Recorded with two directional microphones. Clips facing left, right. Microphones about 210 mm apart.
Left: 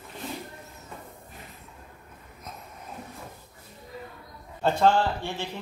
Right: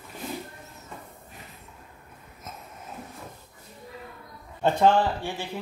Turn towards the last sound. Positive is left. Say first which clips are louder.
# right 1 dB
turn(degrees=-15)  # may be behind; listen again after turning